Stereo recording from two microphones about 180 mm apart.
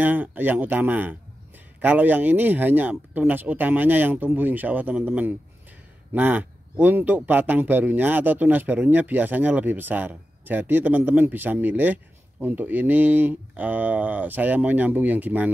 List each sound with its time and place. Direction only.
0.0 s a man's voice: 10° right (ahead or behind)